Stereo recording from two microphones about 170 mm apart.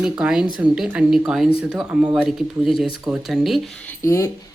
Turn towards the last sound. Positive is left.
turn(degrees=15)  # may be behind; listen again after turning